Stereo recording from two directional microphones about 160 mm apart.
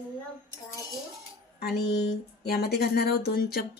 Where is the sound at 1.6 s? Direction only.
85° left.